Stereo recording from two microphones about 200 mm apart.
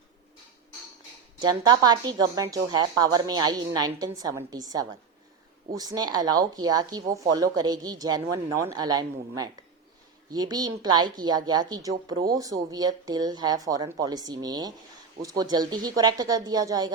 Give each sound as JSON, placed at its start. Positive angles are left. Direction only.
{"t": 1.4, "sound": "speech", "side_deg": -20}